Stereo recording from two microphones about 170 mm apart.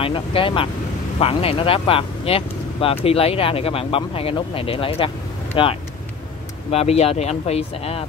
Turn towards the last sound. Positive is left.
turn(degrees=40)  # may be behind; listen again after turning